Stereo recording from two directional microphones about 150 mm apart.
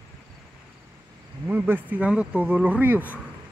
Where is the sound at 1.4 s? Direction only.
15° right (ahead or behind).